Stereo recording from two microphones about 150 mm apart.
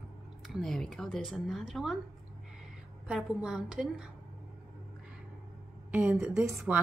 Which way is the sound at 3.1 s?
5° right (ahead or behind).